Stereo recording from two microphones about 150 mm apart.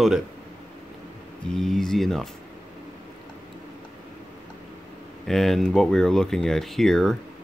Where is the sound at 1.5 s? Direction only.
5° left (ahead or behind).